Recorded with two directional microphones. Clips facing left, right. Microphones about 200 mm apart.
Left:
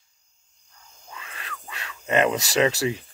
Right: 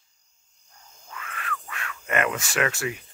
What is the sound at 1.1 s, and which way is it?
Speech, 25° left (ahead or behind).